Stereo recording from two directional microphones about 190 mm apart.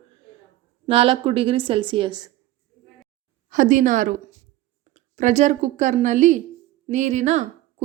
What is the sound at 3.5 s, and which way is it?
A woman's voice, 40° right (ahead or behind).